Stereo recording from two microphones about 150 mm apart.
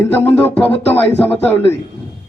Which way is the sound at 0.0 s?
15° left (ahead or behind).